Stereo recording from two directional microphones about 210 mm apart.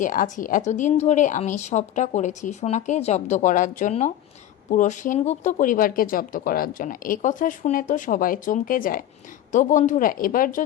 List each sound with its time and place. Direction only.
0.0 s speech: 40° left (ahead or behind)